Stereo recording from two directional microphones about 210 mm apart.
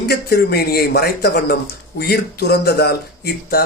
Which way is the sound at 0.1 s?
50° left (ahead or behind).